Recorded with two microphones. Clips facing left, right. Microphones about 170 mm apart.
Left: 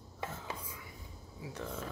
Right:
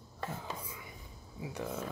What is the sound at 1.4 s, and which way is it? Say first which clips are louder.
Speech: right 3 dB; 20° right (ahead or behind).